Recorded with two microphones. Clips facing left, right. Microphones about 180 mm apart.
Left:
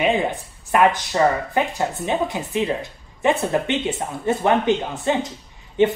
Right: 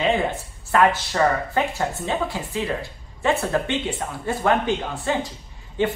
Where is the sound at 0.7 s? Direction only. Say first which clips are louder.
Left 1 dB; 15° left (ahead or behind).